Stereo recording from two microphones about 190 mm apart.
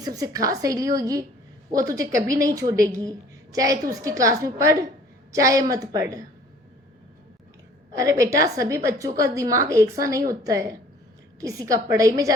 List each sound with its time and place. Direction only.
0.0 s a woman's voice: 20° right (ahead or behind)
7.9 s a woman's voice: 15° right (ahead or behind)